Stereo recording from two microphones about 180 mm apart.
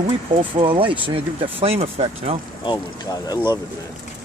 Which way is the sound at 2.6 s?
20° left (ahead or behind).